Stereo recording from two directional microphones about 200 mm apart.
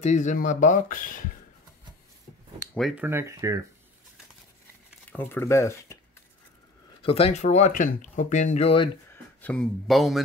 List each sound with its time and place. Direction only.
0.0 s speech: 35° left (ahead or behind)
3.0 s speech: 10° right (ahead or behind)
5.1 s speech: 10° left (ahead or behind)
7.0 s speech: 30° left (ahead or behind)
9.1 s speech: 5° left (ahead or behind)